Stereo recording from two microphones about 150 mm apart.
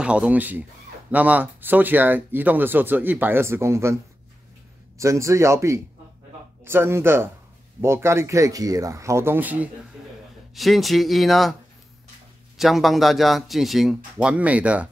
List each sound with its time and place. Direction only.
0.0 s speech: 5° right (ahead or behind)
10.5 s speech: centre (ahead or behind)
12.5 s speech: centre (ahead or behind)